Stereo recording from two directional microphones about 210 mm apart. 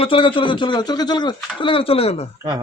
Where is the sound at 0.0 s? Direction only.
25° left (ahead or behind).